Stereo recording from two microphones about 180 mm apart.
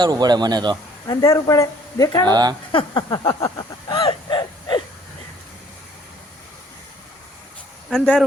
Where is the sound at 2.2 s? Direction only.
20° right (ahead or behind).